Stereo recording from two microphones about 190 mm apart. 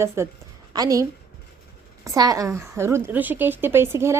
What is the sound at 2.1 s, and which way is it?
Speech, 20° right (ahead or behind).